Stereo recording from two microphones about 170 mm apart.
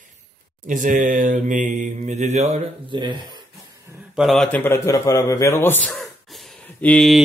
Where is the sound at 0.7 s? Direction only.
50° right (ahead or behind).